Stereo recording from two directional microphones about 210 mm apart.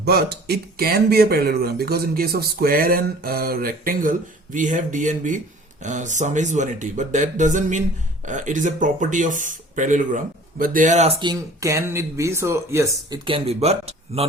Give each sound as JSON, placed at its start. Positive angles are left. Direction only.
{"t": 0.0, "sound": "speech", "side_deg": -50}
{"t": 11.2, "sound": "speech", "side_deg": -15}
{"t": 13.2, "sound": "speech", "side_deg": -25}